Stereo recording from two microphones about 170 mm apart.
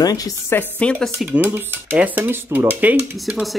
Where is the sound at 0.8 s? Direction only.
5° left (ahead or behind).